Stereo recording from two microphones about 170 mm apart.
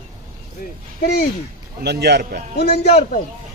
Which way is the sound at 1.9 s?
75° right (ahead or behind).